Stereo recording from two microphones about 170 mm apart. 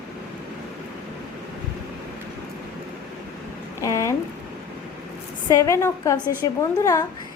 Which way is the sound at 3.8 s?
20° left (ahead or behind).